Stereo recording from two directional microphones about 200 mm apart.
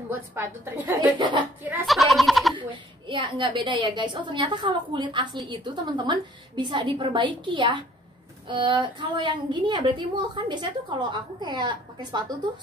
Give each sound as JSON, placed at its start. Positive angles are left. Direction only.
{"t": 0.1, "sound": "a woman's voice", "side_deg": -10}
{"t": 2.5, "sound": "a woman's voice", "side_deg": -25}